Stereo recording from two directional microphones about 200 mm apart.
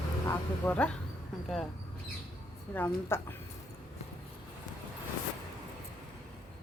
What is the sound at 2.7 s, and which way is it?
Speech, 10° left (ahead or behind).